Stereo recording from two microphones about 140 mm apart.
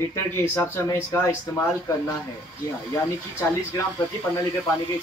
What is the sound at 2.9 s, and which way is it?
Speech, 20° left (ahead or behind).